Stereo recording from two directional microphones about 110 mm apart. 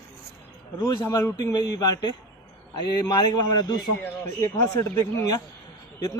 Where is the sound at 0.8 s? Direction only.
25° left (ahead or behind).